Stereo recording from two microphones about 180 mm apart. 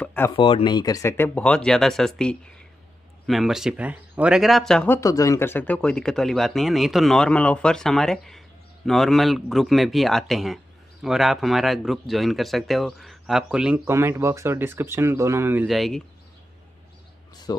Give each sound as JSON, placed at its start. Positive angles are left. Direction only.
{"t": 0.0, "sound": "a sound", "side_deg": 10}
{"t": 0.4, "sound": "speech", "side_deg": 30}
{"t": 17.5, "sound": "speech", "side_deg": 20}